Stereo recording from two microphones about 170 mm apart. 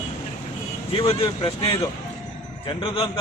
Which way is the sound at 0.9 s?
30° left (ahead or behind).